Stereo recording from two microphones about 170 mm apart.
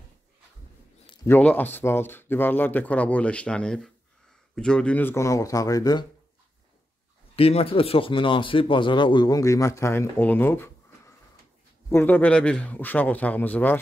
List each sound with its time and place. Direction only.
1.2 s speech: 10° left (ahead or behind)
7.3 s speech: 35° left (ahead or behind); by 10.7 s 10° left (ahead or behind)
11.9 s speech: 10° left (ahead or behind)